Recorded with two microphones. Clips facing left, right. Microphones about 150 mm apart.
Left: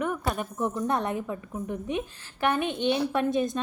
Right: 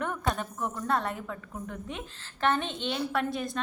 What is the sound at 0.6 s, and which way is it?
A woman's voice, 20° left (ahead or behind).